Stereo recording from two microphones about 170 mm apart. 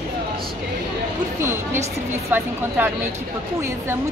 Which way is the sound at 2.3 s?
10° right (ahead or behind).